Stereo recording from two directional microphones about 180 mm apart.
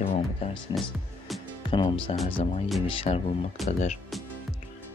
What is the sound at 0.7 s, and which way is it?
Speech, 25° left (ahead or behind).